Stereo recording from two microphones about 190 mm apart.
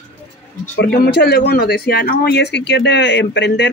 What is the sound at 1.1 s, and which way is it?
Speech, 60° left (ahead or behind).